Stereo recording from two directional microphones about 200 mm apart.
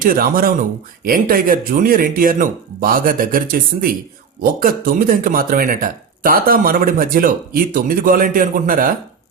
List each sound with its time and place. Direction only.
0.0 s speech: 45° right (ahead or behind)